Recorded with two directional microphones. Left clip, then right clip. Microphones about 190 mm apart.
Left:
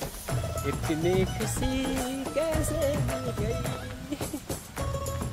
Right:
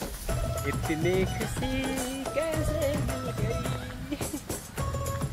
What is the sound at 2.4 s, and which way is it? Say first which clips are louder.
Speech: left 2 dB; 25° left (ahead or behind).